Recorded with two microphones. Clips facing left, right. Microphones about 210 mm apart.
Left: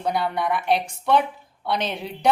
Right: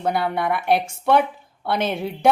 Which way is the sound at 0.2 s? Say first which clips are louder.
Right 2 dB; 55° right (ahead or behind).